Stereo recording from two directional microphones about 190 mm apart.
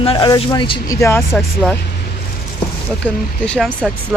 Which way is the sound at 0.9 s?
15° left (ahead or behind).